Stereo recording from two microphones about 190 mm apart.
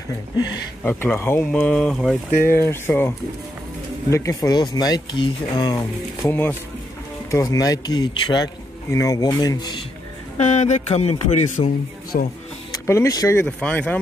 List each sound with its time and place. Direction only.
0.8 s speech: 10° left (ahead or behind)
10.4 s speech: 35° left (ahead or behind)
12.1 s speech: 45° left (ahead or behind)
12.8 s speech: 15° left (ahead or behind)